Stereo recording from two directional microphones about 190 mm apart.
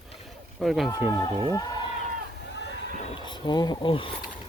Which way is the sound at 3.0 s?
30° left (ahead or behind).